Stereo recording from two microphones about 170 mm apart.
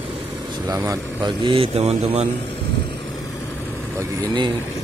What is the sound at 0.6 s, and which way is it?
Speech, 20° right (ahead or behind).